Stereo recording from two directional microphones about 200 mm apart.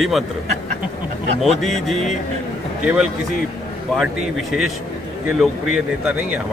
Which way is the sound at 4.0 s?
Centre (ahead or behind).